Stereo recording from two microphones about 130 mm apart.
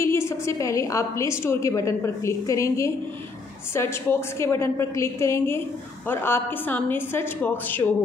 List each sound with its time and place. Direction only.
0.0 s a woman's voice: 20° left (ahead or behind)